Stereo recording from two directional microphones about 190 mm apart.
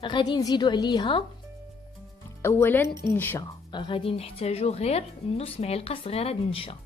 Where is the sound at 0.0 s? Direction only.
25° left (ahead or behind).